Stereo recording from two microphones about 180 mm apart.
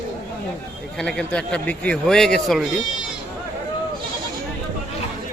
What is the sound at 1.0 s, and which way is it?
A man's voice, 5° left (ahead or behind).